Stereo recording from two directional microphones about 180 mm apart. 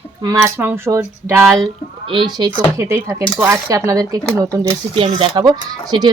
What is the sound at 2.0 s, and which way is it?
Speech, 25° right (ahead or behind).